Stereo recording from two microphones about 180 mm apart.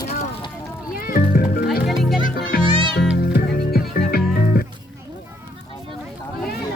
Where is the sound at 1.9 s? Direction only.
Centre (ahead or behind).